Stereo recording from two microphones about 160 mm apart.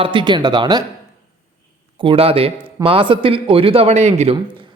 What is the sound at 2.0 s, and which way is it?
Speech, 35° right (ahead or behind).